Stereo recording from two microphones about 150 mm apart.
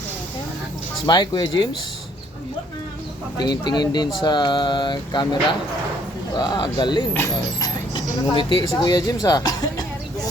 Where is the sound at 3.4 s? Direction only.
30° left (ahead or behind).